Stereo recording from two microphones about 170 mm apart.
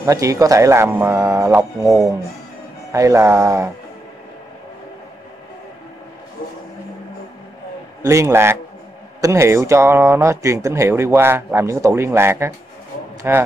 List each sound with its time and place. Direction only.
0.0 s speech: 20° right (ahead or behind)
2.9 s speech: 15° right (ahead or behind)
8.0 s speech: 15° right (ahead or behind)